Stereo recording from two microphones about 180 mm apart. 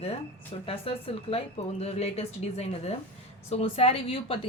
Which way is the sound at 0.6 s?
30° left (ahead or behind).